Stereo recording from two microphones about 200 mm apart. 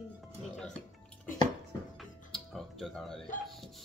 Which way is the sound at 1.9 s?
Centre (ahead or behind).